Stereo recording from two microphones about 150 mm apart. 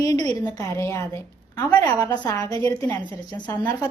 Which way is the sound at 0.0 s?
25° left (ahead or behind).